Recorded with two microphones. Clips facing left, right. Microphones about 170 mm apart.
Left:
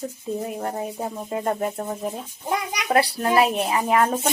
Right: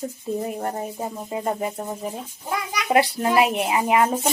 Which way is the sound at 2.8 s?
15° right (ahead or behind).